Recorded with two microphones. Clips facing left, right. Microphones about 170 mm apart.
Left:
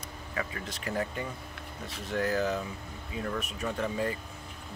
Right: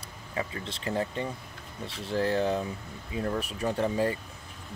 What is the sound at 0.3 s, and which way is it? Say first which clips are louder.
Speech: right 2 dB; 25° right (ahead or behind).